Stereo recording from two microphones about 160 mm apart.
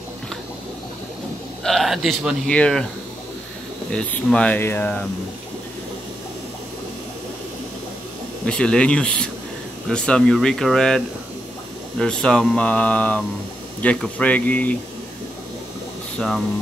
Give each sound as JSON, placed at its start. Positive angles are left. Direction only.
{"t": 1.6, "sound": "speech", "side_deg": 0}
{"t": 3.9, "sound": "mantra", "side_deg": 5}
{"t": 8.5, "sound": "mantra", "side_deg": 5}
{"t": 9.8, "sound": "speech", "side_deg": 5}
{"t": 12.0, "sound": "mantra", "side_deg": 5}